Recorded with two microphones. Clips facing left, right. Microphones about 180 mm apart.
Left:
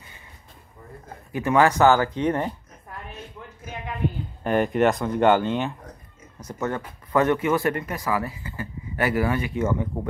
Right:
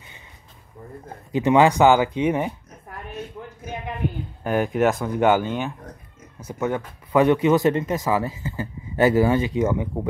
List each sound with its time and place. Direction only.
1.3 s speech: 20° right (ahead or behind)
4.4 s speech: 5° right (ahead or behind)